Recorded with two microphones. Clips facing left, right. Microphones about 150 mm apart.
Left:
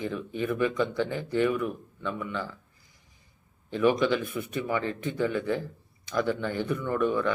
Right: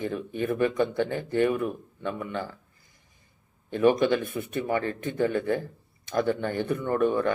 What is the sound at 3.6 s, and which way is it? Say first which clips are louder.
A man's voice: right 2 dB; 50° right (ahead or behind).